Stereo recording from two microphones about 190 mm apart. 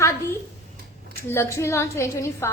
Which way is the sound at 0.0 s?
15° left (ahead or behind).